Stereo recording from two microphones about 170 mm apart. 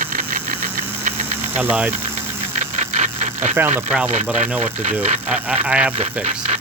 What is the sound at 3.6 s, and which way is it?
Speech, 15° right (ahead or behind).